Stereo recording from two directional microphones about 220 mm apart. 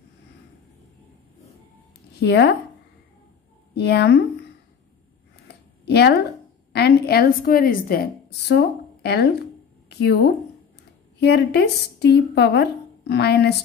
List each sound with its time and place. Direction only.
2.1 s speech: 50° left (ahead or behind)
3.7 s a woman's voice: 50° left (ahead or behind)
5.9 s a woman's voice: 50° left (ahead or behind)